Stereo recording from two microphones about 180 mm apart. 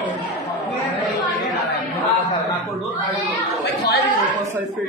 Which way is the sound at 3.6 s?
70° left (ahead or behind).